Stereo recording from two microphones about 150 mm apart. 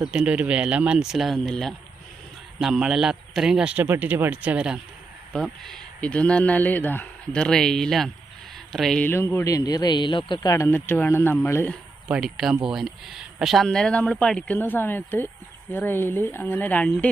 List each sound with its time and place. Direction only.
0.0 s a man's voice: 5° right (ahead or behind)
5.3 s speech: 5° left (ahead or behind)
9.0 s a man's voice: 15° left (ahead or behind)
12.1 s speech: 5° right (ahead or behind)